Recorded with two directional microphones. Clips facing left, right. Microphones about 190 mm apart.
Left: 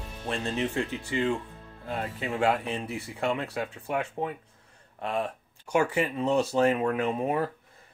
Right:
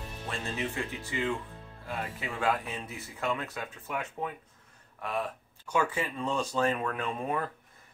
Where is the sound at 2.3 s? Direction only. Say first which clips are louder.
Left 4 dB; 25° left (ahead or behind).